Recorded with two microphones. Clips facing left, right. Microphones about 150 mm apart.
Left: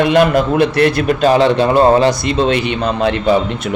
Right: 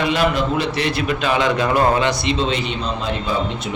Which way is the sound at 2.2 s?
50° left (ahead or behind).